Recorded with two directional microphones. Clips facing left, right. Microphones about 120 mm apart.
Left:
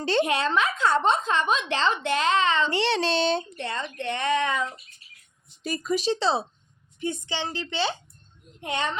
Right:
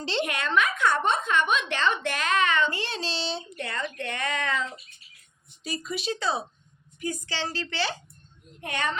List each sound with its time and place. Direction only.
0.3 s a woman's voice: 30° left (ahead or behind)
2.6 s speech: 75° left (ahead or behind); by 3.6 s 50° left (ahead or behind)
3.6 s a woman's voice: 25° left (ahead or behind)
5.6 s a woman's voice: 45° left (ahead or behind); by 8.9 s 20° left (ahead or behind)